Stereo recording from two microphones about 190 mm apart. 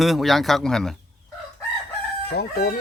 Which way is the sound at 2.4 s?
55° left (ahead or behind).